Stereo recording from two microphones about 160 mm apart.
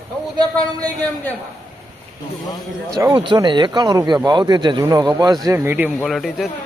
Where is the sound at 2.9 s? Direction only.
20° right (ahead or behind).